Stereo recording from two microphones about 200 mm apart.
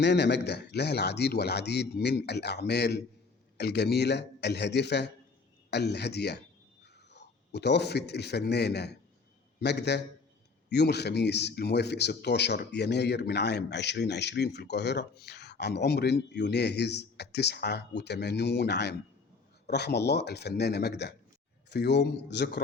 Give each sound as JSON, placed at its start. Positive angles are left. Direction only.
{"t": 0.0, "sound": "a man's voice", "side_deg": 60}